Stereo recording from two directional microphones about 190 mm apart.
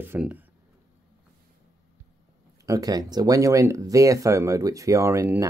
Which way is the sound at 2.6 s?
20° right (ahead or behind).